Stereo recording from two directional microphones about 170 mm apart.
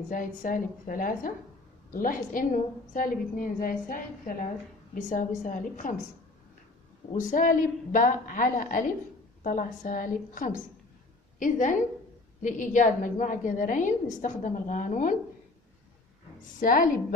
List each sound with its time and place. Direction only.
0.1 s a woman's voice: 55° left (ahead or behind)
7.2 s a woman's voice: 50° left (ahead or behind)
16.5 s a woman's voice: 55° left (ahead or behind)